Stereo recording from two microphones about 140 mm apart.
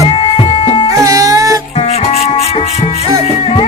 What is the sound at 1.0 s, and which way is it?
Music, 25° right (ahead or behind).